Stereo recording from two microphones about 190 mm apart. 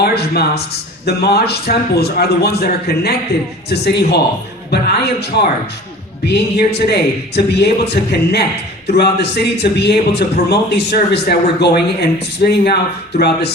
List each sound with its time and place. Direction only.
0.0 s speech: 55° left (ahead or behind)